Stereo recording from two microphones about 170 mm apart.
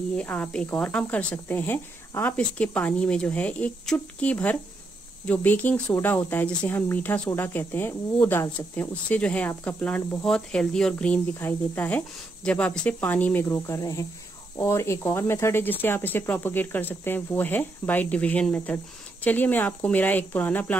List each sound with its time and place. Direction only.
0.1 s speech: 5° left (ahead or behind)